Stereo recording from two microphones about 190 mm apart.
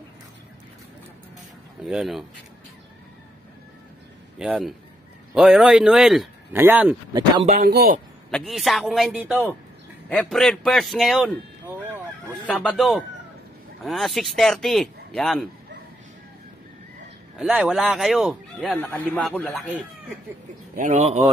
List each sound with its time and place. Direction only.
1.9 s speech: centre (ahead or behind)
4.4 s speech: 5° right (ahead or behind)
7.4 s a man's voice: 40° right (ahead or behind)
8.3 s speech: centre (ahead or behind)
12.4 s speech: 5° left (ahead or behind)
17.4 s speech: 5° right (ahead or behind)
20.7 s speech: 40° right (ahead or behind)